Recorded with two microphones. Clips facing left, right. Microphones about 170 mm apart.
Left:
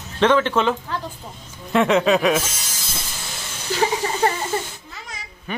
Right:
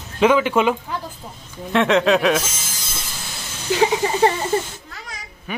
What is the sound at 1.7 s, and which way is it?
Speech, centre (ahead or behind).